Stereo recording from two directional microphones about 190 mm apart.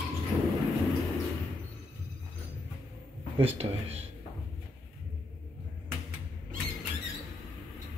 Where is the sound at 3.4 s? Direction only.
30° right (ahead or behind).